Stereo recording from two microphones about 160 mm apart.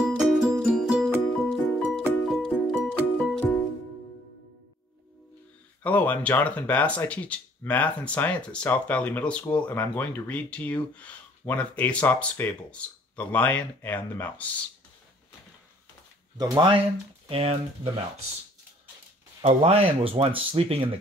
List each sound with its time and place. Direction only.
0.0 s music: centre (ahead or behind)
5.8 s speech: 10° left (ahead or behind)
16.3 s speech: 30° right (ahead or behind)
19.4 s speech: 40° right (ahead or behind)